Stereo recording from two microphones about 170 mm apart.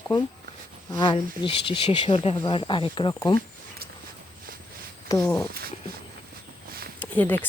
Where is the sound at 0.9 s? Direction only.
25° left (ahead or behind).